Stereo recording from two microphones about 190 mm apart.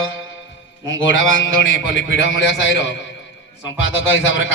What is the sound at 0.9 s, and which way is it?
A man's voice, 85° left.